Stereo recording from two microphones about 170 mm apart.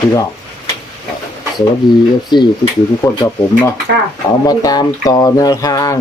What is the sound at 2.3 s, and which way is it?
Speech, 25° left (ahead or behind).